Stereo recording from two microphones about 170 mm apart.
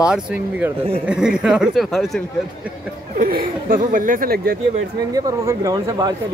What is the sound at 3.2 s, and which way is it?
Speech, 55° right (ahead or behind).